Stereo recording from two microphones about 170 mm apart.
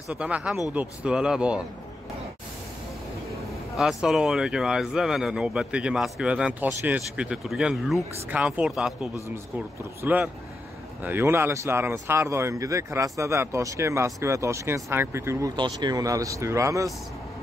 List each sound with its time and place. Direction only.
0.1 s speech: 5° right (ahead or behind)
3.7 s speech: 5° right (ahead or behind)
15.5 s speech: 25° right (ahead or behind)